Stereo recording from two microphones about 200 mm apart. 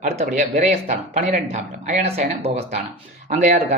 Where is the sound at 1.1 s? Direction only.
35° right (ahead or behind).